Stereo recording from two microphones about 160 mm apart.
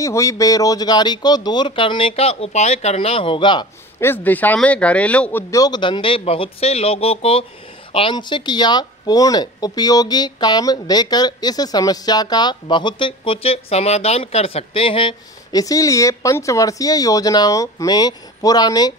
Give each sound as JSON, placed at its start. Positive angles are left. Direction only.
{"t": 0.0, "sound": "speech", "side_deg": 20}
{"t": 4.0, "sound": "speech", "side_deg": 10}
{"t": 5.5, "sound": "speech", "side_deg": 25}